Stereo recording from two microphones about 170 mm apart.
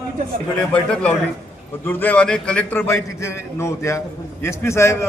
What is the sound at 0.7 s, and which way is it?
A man's voice, 5° left (ahead or behind).